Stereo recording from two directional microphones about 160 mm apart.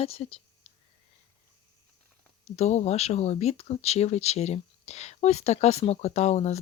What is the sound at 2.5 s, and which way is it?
Speech, 45° left (ahead or behind).